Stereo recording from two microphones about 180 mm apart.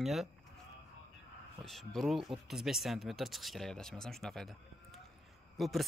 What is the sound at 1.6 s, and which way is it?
Speech, centre (ahead or behind).